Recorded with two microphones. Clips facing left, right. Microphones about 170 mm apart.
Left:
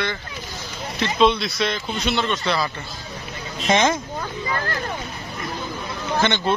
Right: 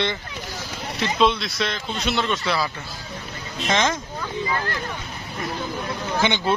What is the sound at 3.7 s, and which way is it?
Speech, 15° left (ahead or behind).